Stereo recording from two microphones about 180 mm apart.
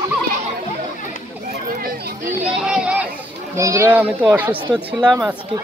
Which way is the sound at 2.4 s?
5° right (ahead or behind).